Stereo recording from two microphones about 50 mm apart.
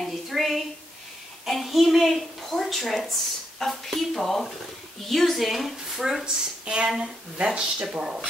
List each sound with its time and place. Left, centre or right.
0.0 s a sound: centre
3.5 s a woman's voice: centre
6.0 s a woman's voice: centre